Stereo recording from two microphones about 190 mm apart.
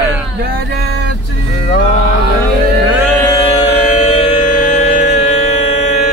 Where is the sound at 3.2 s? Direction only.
30° left (ahead or behind).